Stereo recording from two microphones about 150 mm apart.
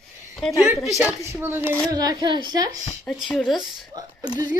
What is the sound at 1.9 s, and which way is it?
Speech, 25° right (ahead or behind).